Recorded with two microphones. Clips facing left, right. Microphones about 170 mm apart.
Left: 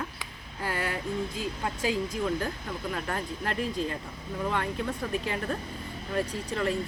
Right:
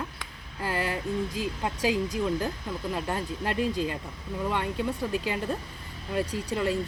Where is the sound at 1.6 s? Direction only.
15° right (ahead or behind).